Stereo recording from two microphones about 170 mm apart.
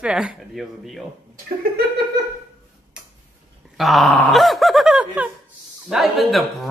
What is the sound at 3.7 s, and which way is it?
Speech, centre (ahead or behind).